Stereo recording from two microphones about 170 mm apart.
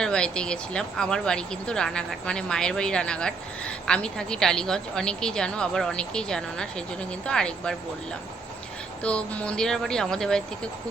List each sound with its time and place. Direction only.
0.0 s speech: 5° left (ahead or behind)
9.0 s speech: 5° left (ahead or behind)